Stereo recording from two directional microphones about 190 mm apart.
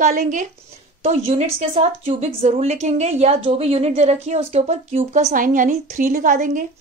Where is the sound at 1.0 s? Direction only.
35° right (ahead or behind).